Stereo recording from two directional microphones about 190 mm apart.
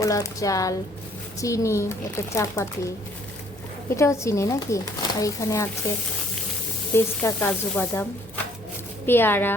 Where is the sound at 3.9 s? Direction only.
15° left (ahead or behind).